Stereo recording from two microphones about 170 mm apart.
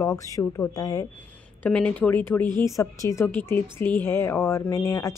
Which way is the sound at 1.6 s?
5° left (ahead or behind).